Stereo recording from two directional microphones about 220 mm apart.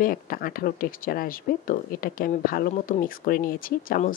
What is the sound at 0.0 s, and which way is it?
Speech, 40° left (ahead or behind).